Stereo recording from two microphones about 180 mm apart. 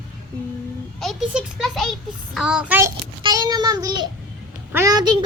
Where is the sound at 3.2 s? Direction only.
20° right (ahead or behind).